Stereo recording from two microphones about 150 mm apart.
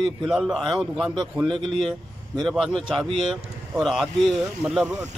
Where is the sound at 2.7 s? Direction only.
Centre (ahead or behind).